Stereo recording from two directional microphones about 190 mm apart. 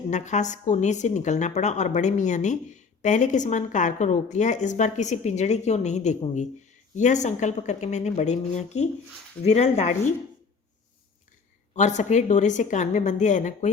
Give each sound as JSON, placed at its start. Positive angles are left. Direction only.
{"t": 0.1, "sound": "speech", "side_deg": 40}
{"t": 11.7, "sound": "speech", "side_deg": 40}